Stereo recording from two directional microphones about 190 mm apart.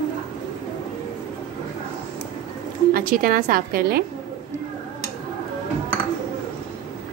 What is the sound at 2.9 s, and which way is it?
A woman's voice, 45° right (ahead or behind).